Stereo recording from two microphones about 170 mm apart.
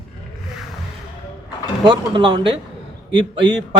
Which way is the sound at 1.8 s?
25° right (ahead or behind).